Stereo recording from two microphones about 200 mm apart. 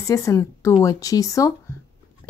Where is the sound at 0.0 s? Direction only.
15° left (ahead or behind).